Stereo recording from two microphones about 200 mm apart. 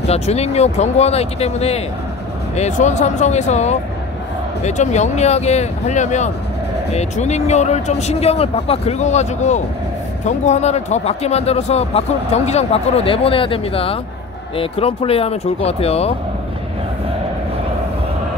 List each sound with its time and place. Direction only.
0.0 s speech: 30° left (ahead or behind)